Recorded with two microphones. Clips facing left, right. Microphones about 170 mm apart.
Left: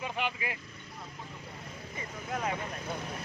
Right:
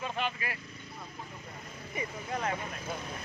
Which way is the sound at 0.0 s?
15° left (ahead or behind).